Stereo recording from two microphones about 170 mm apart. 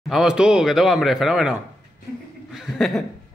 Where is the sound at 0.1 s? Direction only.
5° right (ahead or behind).